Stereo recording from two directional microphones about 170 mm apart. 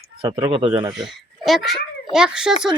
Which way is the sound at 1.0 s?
Centre (ahead or behind).